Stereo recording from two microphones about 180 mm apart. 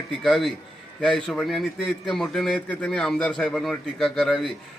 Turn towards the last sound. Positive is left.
turn(degrees=0)  # may be behind; listen again after turning